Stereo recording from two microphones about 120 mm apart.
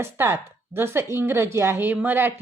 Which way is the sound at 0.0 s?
20° right (ahead or behind).